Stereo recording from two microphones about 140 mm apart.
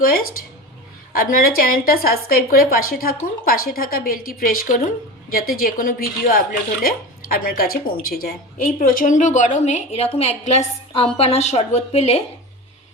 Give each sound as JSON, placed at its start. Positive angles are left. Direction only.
{"t": 0.0, "sound": "a woman's voice", "side_deg": 90}
{"t": 5.3, "sound": "a woman's voice", "side_deg": 90}